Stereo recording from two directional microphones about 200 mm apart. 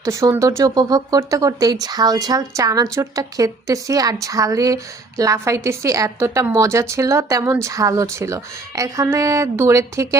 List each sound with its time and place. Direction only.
0.0 s speech: 15° right (ahead or behind)